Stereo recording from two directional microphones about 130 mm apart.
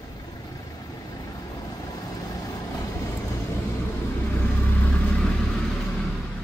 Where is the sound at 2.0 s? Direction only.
25° left (ahead or behind).